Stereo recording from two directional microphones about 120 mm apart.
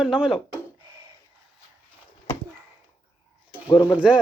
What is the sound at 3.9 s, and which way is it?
Speech, 10° right (ahead or behind).